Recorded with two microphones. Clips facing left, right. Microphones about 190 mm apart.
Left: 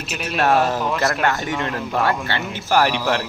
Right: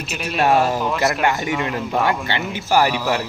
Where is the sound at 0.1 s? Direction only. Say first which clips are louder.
Right 1 dB; centre (ahead or behind).